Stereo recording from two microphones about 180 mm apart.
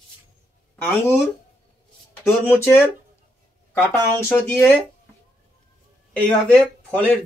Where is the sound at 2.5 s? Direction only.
10° left (ahead or behind).